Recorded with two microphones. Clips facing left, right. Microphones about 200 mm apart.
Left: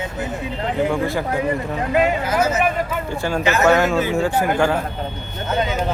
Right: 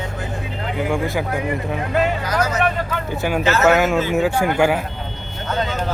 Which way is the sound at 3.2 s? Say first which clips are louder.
Right 2 dB; 10° right (ahead or behind).